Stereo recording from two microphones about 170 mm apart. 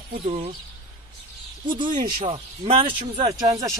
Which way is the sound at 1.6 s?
25° right (ahead or behind).